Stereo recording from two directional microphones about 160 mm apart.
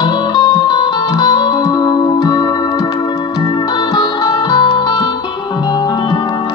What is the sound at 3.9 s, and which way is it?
Music, 25° left (ahead or behind).